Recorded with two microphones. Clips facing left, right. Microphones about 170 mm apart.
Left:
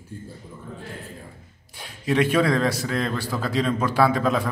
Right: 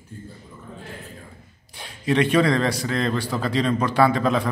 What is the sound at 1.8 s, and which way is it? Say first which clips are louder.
A man's voice: right 1 dB; 5° left (ahead or behind).